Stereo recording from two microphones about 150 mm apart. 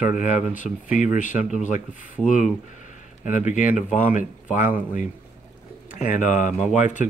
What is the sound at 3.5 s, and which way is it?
Speech, 55° left (ahead or behind).